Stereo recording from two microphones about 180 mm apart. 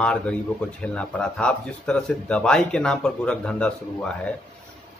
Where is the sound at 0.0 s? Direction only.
5° left (ahead or behind).